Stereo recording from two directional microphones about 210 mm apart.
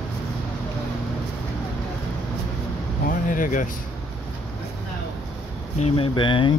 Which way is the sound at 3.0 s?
40° left (ahead or behind).